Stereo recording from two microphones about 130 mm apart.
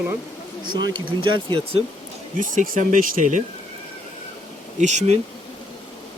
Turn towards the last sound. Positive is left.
turn(degrees=-60)  # may be behind; listen again after turning